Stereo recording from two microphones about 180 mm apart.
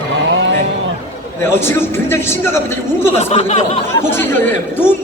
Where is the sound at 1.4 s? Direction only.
15° left (ahead or behind).